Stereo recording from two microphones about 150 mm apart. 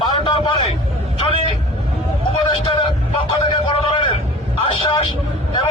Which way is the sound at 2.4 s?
35° left (ahead or behind).